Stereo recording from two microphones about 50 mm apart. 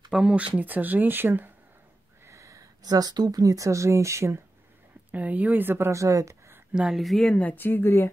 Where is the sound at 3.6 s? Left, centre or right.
Right.